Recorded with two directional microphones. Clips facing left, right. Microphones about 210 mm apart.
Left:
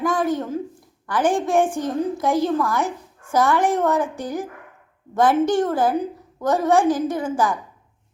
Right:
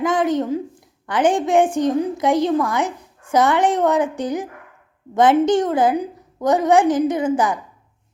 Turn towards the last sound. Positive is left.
turn(degrees=-20)  # may be behind; listen again after turning